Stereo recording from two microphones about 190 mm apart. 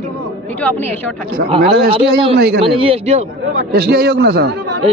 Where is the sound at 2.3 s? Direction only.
60° right (ahead or behind).